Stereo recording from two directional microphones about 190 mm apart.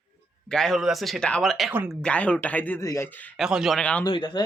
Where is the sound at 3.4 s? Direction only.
5° right (ahead or behind).